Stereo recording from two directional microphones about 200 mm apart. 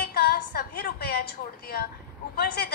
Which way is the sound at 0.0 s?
55° left (ahead or behind).